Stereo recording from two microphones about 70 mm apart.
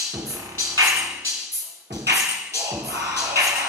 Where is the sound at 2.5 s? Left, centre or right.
Right.